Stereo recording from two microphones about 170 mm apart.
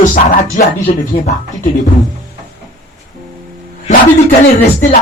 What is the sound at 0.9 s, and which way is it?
Speech, 40° left (ahead or behind).